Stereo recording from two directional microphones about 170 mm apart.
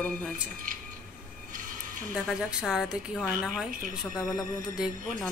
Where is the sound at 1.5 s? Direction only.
50° right (ahead or behind).